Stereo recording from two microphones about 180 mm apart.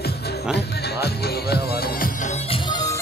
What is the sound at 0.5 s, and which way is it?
Music, 65° left (ahead or behind).